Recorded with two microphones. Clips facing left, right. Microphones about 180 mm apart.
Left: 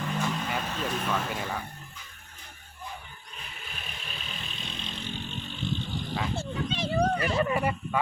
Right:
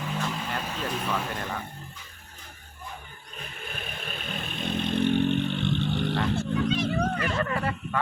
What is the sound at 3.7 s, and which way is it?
Vehicle, 55° right (ahead or behind).